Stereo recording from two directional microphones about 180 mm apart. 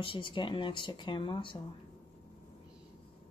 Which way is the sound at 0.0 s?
30° left (ahead or behind).